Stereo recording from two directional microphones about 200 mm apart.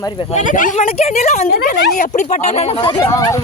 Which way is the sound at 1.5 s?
50° left (ahead or behind).